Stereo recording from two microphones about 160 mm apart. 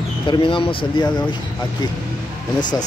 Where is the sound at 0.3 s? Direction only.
30° left (ahead or behind).